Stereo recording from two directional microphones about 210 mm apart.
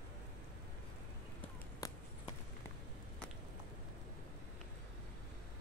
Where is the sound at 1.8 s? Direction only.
15° left (ahead or behind).